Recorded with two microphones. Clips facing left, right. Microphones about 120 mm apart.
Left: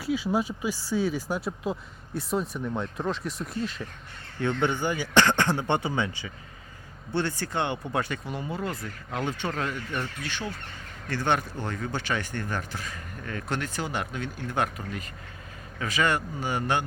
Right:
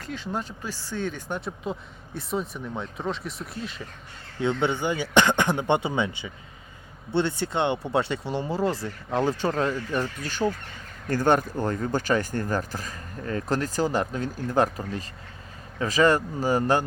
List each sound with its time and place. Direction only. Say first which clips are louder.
0.0 s speech: left 6 dB; 10° left (ahead or behind)
4.4 s a man's voice: right 2 dB; 15° right (ahead or behind); by 16.8 s 40° right (ahead or behind)